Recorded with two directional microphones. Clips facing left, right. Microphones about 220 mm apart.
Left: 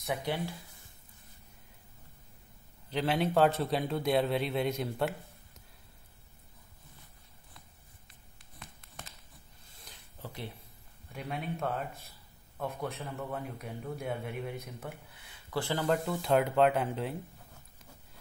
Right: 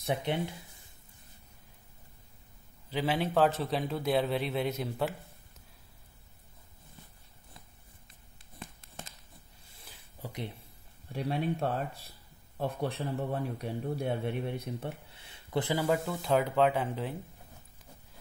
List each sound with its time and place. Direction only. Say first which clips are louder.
0.0 s a man's voice: right 2 dB; 25° right (ahead or behind)
2.9 s a man's voice: left 1 dB; centre (ahead or behind)
8.5 s a sound: right 5 dB; 25° right (ahead or behind)
9.8 s a sound: right 2 dB; 15° right (ahead or behind)
11.1 s a man's voice: right 6 dB; 30° right (ahead or behind)
15.7 s a man's voice: even; 10° right (ahead or behind)